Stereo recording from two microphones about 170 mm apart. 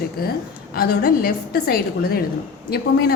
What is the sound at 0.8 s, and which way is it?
A woman's voice, 65° left (ahead or behind).